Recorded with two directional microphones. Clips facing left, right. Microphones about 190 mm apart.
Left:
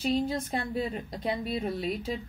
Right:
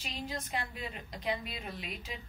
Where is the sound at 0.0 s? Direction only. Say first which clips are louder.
Left 13 dB; 35° left (ahead or behind).